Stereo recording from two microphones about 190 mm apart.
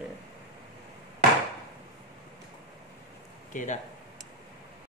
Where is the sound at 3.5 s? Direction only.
40° left (ahead or behind).